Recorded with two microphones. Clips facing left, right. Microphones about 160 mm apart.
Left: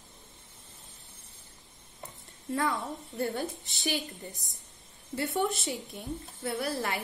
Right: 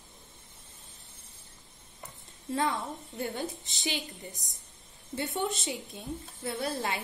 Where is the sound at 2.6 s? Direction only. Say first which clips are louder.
Even; 20° right (ahead or behind).